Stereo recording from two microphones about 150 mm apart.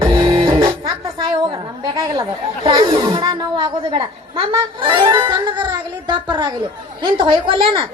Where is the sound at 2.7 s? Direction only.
35° right (ahead or behind).